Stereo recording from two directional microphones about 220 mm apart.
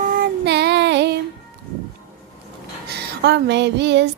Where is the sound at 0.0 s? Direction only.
40° right (ahead or behind).